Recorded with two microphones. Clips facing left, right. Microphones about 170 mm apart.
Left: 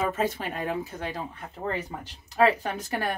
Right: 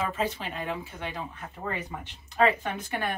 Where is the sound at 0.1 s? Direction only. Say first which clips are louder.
Left 3 dB; 50° left (ahead or behind).